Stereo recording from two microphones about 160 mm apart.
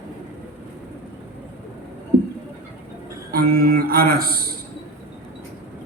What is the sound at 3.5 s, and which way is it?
Speech, 70° right (ahead or behind).